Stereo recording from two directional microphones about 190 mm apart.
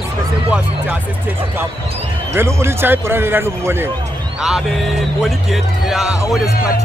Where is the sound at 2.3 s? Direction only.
15° right (ahead or behind).